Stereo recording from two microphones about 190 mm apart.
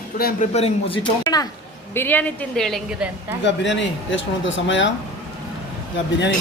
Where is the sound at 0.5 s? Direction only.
30° left (ahead or behind); by 3.3 s 5° right (ahead or behind).